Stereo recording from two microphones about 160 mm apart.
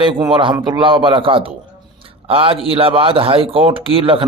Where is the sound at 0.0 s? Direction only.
30° right (ahead or behind).